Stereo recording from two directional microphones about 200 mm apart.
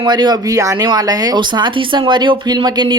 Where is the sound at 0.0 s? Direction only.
20° right (ahead or behind).